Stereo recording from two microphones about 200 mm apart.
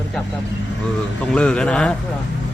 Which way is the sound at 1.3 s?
5° left (ahead or behind).